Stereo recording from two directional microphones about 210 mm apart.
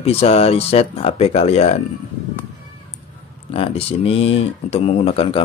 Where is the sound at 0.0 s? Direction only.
30° left (ahead or behind).